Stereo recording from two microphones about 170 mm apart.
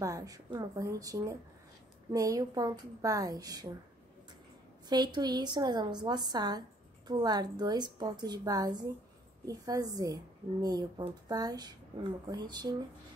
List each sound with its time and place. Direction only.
0.0 s a woman's voice: 20° right (ahead or behind)
4.8 s a woman's voice: 25° right (ahead or behind)